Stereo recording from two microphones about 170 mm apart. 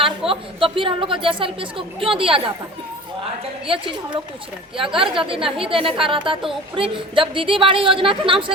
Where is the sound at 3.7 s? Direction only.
30° right (ahead or behind).